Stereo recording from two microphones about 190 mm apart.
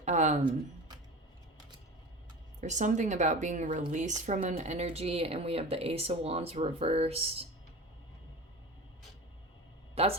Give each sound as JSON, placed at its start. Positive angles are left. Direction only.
{"t": 0.0, "sound": "a sound", "side_deg": -40}
{"t": 2.6, "sound": "speech", "side_deg": -40}
{"t": 9.9, "sound": "speech", "side_deg": -30}